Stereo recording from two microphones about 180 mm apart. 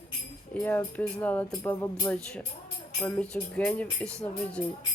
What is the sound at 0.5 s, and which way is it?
Speech, 5° left (ahead or behind).